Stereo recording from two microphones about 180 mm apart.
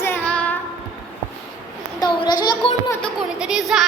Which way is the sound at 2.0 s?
25° left (ahead or behind).